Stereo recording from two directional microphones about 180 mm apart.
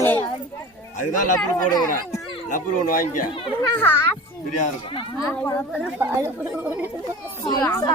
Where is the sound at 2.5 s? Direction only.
50° left (ahead or behind).